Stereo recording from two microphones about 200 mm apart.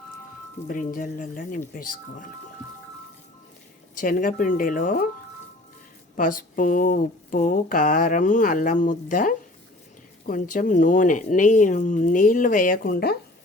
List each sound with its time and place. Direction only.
0.7 s speech: 40° left (ahead or behind)
3.9 s speech: 45° left (ahead or behind)
6.1 s speech: 40° left (ahead or behind)